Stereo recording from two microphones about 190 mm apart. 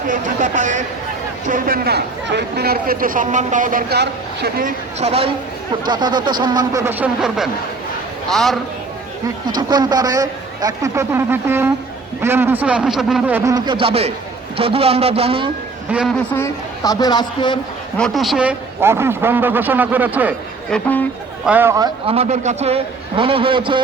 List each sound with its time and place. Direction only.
0.1 s a man's voice: 45° right (ahead or behind)
4.9 s a man's voice: 35° right (ahead or behind)
5.9 s a man's voice: 20° right (ahead or behind)
7.2 s speech: centre (ahead or behind)
9.5 s a man's voice: 20° right (ahead or behind)
15.9 s speech: 5° right (ahead or behind)
16.3 s a woman's voice: 15° left (ahead or behind)
17.9 s a man's voice: centre (ahead or behind)
20.7 s speech: 5° left (ahead or behind)
21.4 s a man's voice: 10° right (ahead or behind); by 23.8 s 25° right (ahead or behind)